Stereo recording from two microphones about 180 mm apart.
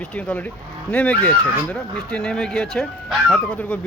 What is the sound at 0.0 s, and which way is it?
Cattle, 5° left (ahead or behind).